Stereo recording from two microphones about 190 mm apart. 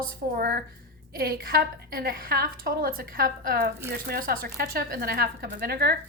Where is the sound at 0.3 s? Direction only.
50° right (ahead or behind).